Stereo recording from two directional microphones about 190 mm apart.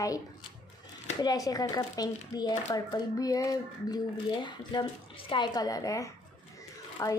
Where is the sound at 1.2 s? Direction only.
20° left (ahead or behind).